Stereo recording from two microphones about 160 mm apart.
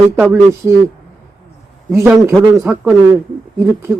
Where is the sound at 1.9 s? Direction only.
15° right (ahead or behind).